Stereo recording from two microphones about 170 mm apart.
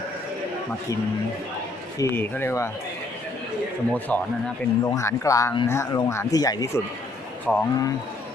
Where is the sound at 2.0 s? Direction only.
15° left (ahead or behind).